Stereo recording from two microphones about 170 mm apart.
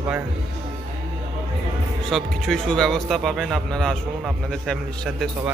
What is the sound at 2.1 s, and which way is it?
Speech, centre (ahead or behind).